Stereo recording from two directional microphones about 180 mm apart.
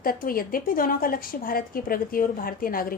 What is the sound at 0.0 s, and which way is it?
A woman's voice, 55° left (ahead or behind).